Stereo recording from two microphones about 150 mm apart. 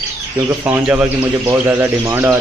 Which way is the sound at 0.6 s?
15° right (ahead or behind).